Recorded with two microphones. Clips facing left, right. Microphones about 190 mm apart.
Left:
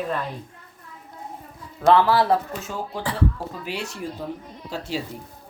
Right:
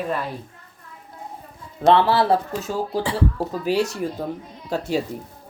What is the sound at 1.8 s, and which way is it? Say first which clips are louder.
A man's voice: right 1 dB; 25° right (ahead or behind).